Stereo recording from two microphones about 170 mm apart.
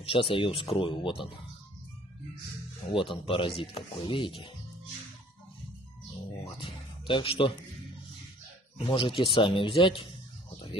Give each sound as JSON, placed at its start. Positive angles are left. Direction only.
{"t": 0.0, "sound": "speech", "side_deg": 30}
{"t": 2.9, "sound": "speech", "side_deg": 30}
{"t": 6.4, "sound": "speech", "side_deg": 30}
{"t": 8.7, "sound": "speech", "side_deg": 30}